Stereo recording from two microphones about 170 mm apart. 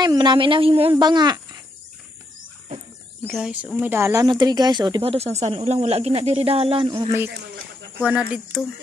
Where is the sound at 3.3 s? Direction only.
Centre (ahead or behind); by 7.1 s 35° right (ahead or behind).